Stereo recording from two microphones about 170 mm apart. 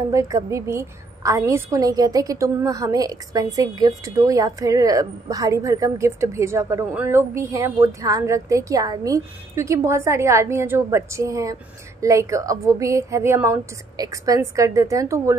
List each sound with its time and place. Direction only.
0.1 s a woman's voice: 20° right (ahead or behind)